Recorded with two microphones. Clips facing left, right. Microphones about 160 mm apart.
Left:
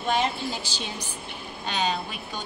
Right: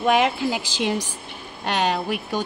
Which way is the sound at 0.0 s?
90° right.